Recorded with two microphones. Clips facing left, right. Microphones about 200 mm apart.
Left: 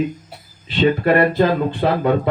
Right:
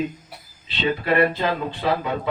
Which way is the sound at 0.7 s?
50° left (ahead or behind).